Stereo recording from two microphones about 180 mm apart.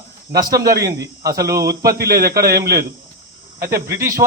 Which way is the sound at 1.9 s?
60° right (ahead or behind).